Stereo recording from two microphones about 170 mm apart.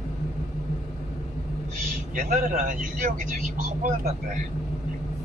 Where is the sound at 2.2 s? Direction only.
50° right (ahead or behind).